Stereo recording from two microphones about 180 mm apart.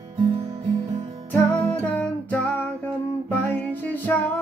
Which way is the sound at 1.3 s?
10° left (ahead or behind).